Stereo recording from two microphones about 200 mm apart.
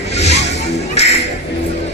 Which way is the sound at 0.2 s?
35° left (ahead or behind).